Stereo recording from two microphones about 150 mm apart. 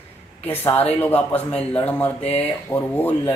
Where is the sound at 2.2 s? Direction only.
45° left (ahead or behind).